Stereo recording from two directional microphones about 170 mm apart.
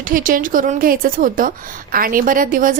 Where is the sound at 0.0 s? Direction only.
55° right (ahead or behind).